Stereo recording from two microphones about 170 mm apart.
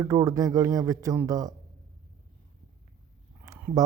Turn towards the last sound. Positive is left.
turn(degrees=-20)  # may be behind; listen again after turning